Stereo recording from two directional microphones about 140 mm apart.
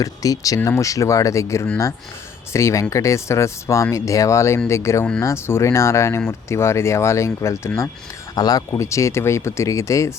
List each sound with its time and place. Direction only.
0.0 s speech: 25° left (ahead or behind)